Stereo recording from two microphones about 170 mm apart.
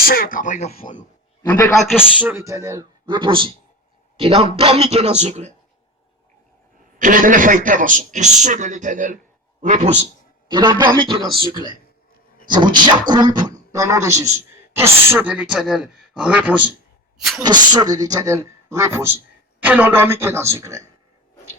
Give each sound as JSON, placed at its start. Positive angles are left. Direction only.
{"t": 0.0, "sound": "speech", "side_deg": 60}
{"t": 1.4, "sound": "a man's voice", "side_deg": 15}
{"t": 1.9, "sound": "speech", "side_deg": -5}
{"t": 7.0, "sound": "a man's voice", "side_deg": -50}
{"t": 10.5, "sound": "speech", "side_deg": -25}
{"t": 12.5, "sound": "a man's voice", "side_deg": -25}
{"t": 17.4, "sound": "a man's voice", "side_deg": -25}